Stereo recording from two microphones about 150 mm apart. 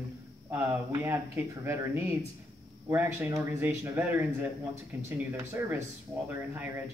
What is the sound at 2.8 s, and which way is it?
Speech, 15° right (ahead or behind).